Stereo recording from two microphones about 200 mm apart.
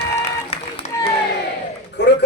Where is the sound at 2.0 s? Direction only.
60° left (ahead or behind).